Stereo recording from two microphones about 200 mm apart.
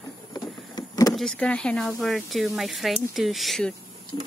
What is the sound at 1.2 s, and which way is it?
Speech, 5° left (ahead or behind).